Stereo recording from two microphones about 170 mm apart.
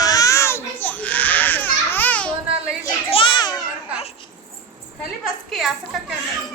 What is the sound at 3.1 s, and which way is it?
Children playing, 30° left (ahead or behind).